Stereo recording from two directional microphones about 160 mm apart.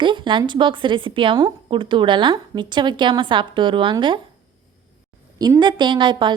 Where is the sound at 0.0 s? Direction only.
30° right (ahead or behind).